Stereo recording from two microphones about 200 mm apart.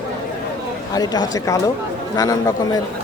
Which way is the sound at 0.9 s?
20° left (ahead or behind).